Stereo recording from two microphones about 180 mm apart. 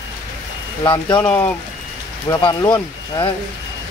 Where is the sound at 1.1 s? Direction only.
10° left (ahead or behind).